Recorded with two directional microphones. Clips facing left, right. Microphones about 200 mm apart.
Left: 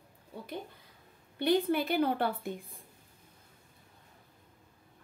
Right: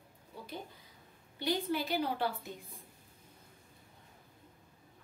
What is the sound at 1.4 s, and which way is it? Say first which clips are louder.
A woman's voice: left 6 dB; 60° left (ahead or behind).